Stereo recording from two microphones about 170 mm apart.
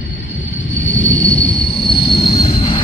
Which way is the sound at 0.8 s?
90° left.